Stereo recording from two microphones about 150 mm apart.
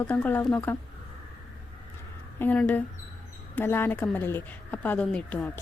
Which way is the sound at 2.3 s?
10° left (ahead or behind).